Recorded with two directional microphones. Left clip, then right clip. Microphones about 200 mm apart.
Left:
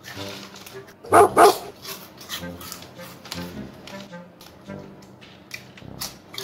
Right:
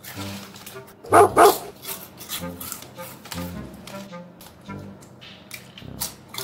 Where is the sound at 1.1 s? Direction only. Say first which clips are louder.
Even; centre (ahead or behind).